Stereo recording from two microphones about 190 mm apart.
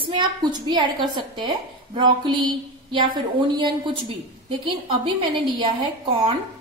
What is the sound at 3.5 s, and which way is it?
A woman's voice, 25° right (ahead or behind).